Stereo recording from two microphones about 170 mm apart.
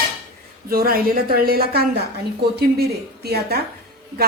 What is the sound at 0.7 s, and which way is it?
A woman's voice, 60° right (ahead or behind).